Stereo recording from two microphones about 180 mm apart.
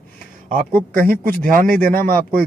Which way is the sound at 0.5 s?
55° right (ahead or behind).